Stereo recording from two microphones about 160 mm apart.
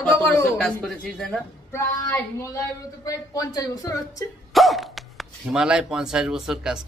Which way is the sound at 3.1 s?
20° left (ahead or behind).